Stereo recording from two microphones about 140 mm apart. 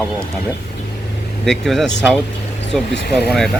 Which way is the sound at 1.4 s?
Centre (ahead or behind).